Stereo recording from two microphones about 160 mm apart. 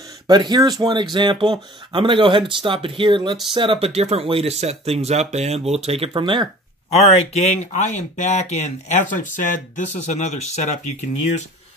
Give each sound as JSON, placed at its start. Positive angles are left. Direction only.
{"t": 0.3, "sound": "speech", "side_deg": -25}
{"t": 6.9, "sound": "speech", "side_deg": 40}